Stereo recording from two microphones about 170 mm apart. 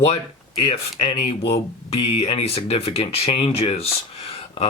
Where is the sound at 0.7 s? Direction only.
35° left (ahead or behind).